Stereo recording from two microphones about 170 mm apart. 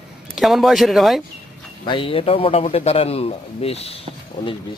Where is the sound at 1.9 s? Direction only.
30° left (ahead or behind).